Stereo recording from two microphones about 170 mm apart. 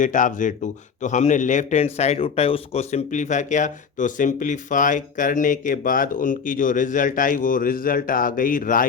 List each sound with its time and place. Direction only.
0.0 s a man's voice: 50° left (ahead or behind)